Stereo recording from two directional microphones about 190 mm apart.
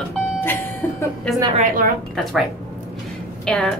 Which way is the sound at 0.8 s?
10° left (ahead or behind).